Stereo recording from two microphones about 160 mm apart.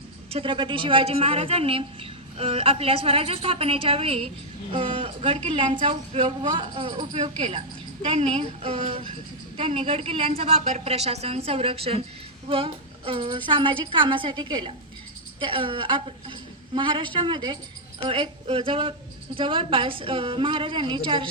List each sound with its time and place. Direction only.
0.3 s a woman's voice: 35° right (ahead or behind)